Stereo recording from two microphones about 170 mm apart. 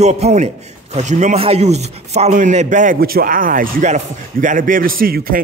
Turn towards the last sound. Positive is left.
turn(degrees=-60)  # may be behind; listen again after turning